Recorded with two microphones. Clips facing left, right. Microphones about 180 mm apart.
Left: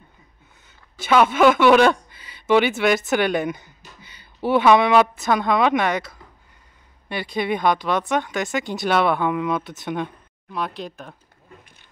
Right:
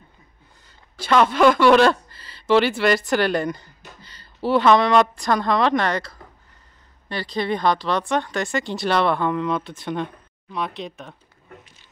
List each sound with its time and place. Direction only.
1.1 s a woman's voice: 5° left (ahead or behind)
4.6 s a woman's voice: 5° left (ahead or behind)
7.2 s speech: 15° left (ahead or behind)
8.1 s a woman's voice: 5° left (ahead or behind)